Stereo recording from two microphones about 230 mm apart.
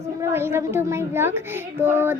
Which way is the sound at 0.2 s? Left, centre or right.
Centre.